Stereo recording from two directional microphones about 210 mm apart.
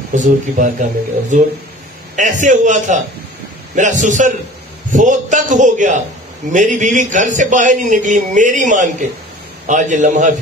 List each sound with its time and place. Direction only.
0.1 s a man's voice: 35° right (ahead or behind)